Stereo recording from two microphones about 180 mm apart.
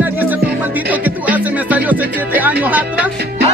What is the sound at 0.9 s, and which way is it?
Music, 10° right (ahead or behind).